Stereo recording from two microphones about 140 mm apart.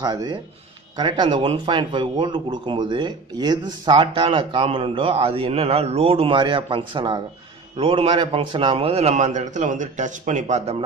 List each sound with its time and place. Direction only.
0.0 s a man's voice: 30° right (ahead or behind); by 10.8 s 55° right (ahead or behind)